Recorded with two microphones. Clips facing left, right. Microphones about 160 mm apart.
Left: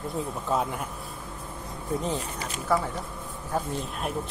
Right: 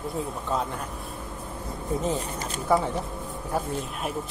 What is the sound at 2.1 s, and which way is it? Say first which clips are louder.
Speech: right 2 dB; 35° right (ahead or behind).